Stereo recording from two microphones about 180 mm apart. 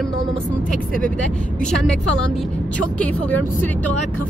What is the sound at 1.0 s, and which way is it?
Speech, 5° left (ahead or behind).